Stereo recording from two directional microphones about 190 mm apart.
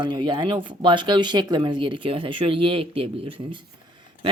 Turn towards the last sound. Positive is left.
turn(degrees=-30)  # may be behind; listen again after turning